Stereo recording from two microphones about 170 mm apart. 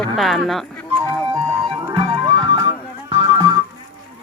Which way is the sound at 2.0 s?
30° right (ahead or behind).